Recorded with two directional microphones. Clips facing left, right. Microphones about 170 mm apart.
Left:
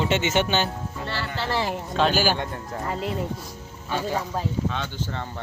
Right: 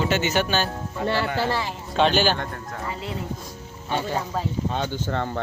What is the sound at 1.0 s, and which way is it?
Speech, 55° right (ahead or behind).